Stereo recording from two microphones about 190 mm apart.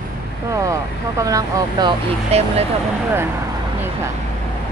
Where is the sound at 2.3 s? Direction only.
30° right (ahead or behind).